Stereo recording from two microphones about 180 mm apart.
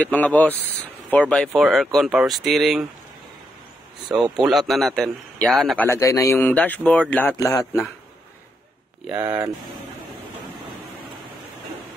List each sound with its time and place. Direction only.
0.0 s a man's voice: 5° left (ahead or behind)
4.1 s a man's voice: 5° right (ahead or behind)
5.9 s speech: 15° left (ahead or behind)
9.1 s speech: 20° right (ahead or behind)